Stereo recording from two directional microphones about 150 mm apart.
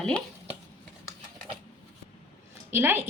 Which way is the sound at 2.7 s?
15° right (ahead or behind).